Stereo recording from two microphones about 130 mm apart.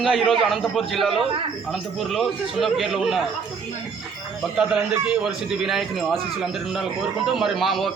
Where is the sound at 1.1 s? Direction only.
45° right (ahead or behind).